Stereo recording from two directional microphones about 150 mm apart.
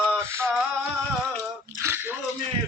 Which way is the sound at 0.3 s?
15° right (ahead or behind).